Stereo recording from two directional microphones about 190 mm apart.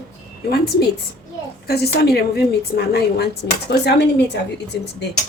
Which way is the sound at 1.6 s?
55° left (ahead or behind).